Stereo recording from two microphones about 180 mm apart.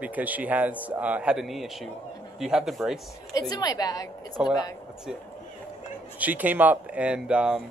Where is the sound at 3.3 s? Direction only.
20° left (ahead or behind).